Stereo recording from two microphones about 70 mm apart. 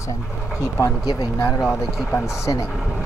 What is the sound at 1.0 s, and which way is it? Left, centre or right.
Speech, left.